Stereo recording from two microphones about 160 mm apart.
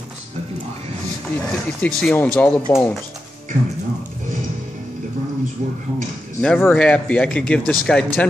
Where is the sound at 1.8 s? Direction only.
5° left (ahead or behind).